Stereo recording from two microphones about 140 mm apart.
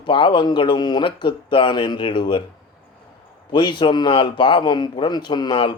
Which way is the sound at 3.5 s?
35° left (ahead or behind).